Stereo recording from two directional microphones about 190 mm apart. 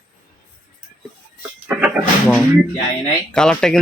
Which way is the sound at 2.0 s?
10° right (ahead or behind).